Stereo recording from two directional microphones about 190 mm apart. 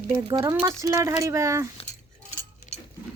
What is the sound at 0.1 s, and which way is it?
Speech, 20° right (ahead or behind).